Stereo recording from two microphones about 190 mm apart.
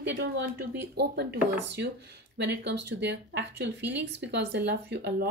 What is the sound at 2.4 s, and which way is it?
Speech, 65° right (ahead or behind).